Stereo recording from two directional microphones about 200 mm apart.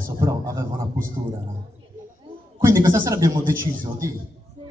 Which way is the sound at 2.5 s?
15° right (ahead or behind).